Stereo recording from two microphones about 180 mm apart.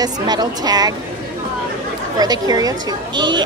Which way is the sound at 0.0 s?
20° right (ahead or behind).